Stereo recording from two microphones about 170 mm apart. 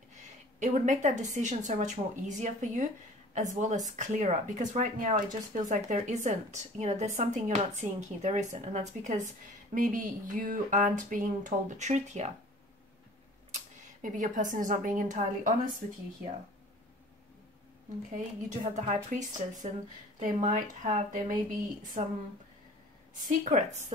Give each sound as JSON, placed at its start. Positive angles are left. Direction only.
{"t": 0.6, "sound": "speech", "side_deg": -45}
{"t": 14.0, "sound": "speech", "side_deg": -50}
{"t": 18.1, "sound": "speech", "side_deg": -45}
{"t": 23.2, "sound": "speech", "side_deg": -50}